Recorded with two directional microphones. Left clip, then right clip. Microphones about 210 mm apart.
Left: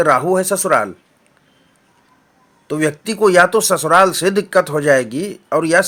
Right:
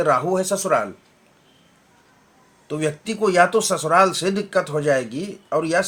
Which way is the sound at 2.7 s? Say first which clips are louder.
Left 6 dB; 40° left (ahead or behind).